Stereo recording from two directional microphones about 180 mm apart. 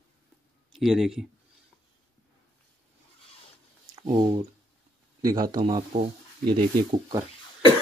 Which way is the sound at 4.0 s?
25° right (ahead or behind).